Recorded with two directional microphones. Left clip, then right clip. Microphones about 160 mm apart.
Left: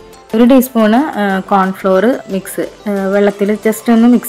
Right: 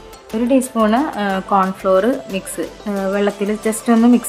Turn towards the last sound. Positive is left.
turn(degrees=20)  # may be behind; listen again after turning